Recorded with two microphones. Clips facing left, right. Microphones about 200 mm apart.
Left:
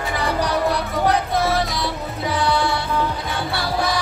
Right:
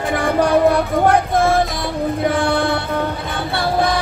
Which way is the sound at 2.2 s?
50° right (ahead or behind).